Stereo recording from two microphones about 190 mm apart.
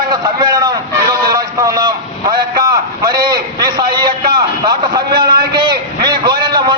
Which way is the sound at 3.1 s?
20° right (ahead or behind).